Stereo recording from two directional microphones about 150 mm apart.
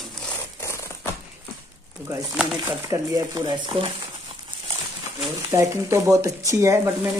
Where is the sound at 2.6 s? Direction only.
20° right (ahead or behind).